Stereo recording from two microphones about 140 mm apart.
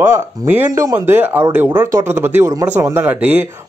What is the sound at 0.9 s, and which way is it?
Speech, 15° right (ahead or behind).